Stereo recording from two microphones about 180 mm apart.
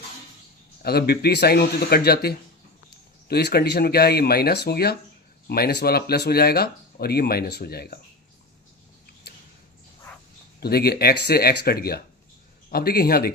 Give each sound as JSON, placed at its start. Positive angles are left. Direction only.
{"t": 0.8, "sound": "speech", "side_deg": 60}
{"t": 10.6, "sound": "speech", "side_deg": 60}